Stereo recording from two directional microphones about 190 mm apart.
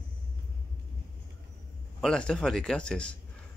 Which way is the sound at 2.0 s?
5° left (ahead or behind).